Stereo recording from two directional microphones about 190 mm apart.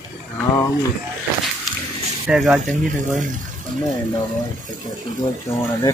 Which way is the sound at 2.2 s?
5° right (ahead or behind).